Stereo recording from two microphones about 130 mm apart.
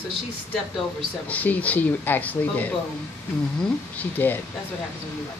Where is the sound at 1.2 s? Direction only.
10° left (ahead or behind).